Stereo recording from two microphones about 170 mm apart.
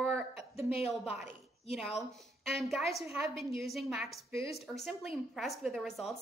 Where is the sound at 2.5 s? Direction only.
Centre (ahead or behind).